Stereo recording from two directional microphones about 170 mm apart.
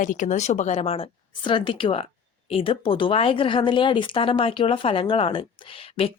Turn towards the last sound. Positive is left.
turn(degrees=35)  # may be behind; listen again after turning